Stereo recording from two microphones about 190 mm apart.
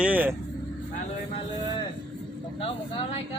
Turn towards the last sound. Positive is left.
turn(degrees=30)  # may be behind; listen again after turning